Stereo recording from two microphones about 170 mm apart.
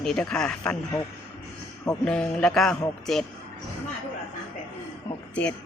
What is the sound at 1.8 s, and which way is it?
Speech, 5° left (ahead or behind).